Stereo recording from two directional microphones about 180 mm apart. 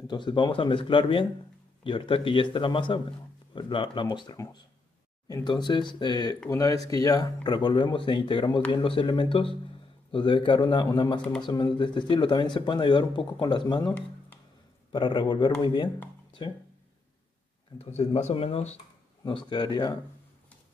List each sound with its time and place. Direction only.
0.0 s speech: 25° left (ahead or behind)
16.3 s guitar: 25° left (ahead or behind)
17.7 s speech: 35° left (ahead or behind)
19.2 s speech: 25° left (ahead or behind)